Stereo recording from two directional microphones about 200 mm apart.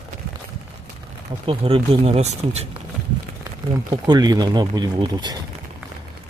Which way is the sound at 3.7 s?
20° right (ahead or behind).